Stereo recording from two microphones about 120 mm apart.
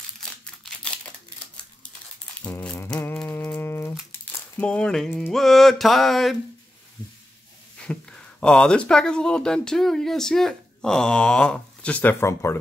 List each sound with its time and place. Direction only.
0.2 s crumpling: 5° left (ahead or behind)
2.5 s music: 15° left (ahead or behind)
4.1 s a sound: 10° left (ahead or behind)
7.8 s speech: 10° left (ahead or behind)